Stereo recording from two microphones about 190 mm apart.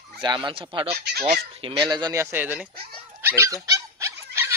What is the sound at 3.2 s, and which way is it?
Dog, 15° right (ahead or behind).